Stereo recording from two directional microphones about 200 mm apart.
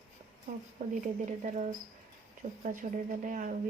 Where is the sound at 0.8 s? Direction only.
45° right (ahead or behind).